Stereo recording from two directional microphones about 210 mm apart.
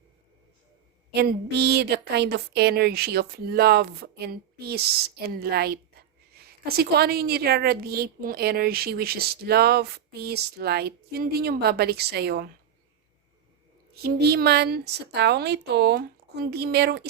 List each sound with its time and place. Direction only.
1.1 s a woman's voice: 50° right (ahead or behind)
13.9 s a woman's voice: 50° right (ahead or behind)